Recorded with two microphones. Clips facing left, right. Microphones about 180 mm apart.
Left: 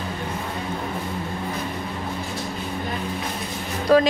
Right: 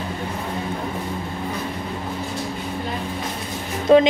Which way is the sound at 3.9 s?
25° right (ahead or behind).